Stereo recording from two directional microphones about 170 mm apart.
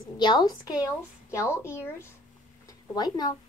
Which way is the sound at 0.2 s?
25° left (ahead or behind).